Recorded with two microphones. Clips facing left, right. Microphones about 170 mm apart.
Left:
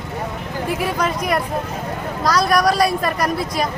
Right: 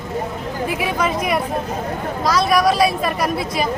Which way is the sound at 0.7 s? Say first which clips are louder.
Left 1 dB; centre (ahead or behind).